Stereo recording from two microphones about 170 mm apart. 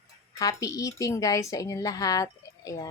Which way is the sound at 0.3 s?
20° left (ahead or behind).